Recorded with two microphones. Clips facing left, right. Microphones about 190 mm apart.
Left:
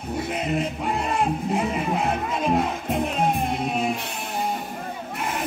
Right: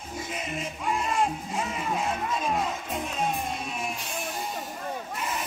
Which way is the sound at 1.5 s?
60° left (ahead or behind).